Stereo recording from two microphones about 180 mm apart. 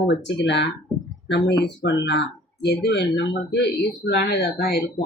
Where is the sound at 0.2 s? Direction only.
80° left.